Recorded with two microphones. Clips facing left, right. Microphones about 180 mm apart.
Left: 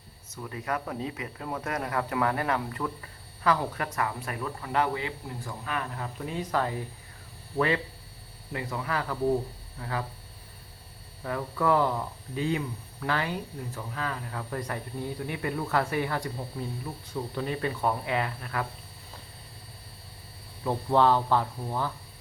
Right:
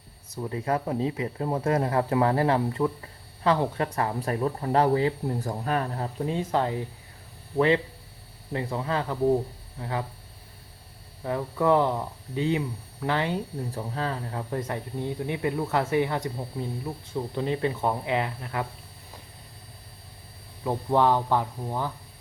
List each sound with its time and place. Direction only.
0.3 s speech: 30° right (ahead or behind)
11.2 s speech: 20° right (ahead or behind)
20.7 s speech: 15° right (ahead or behind)